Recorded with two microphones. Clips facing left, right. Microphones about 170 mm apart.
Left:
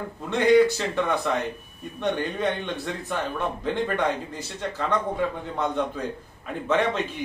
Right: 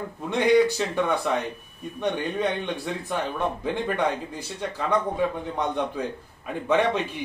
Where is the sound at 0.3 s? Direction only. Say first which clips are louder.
Left 1 dB; 15° right (ahead or behind).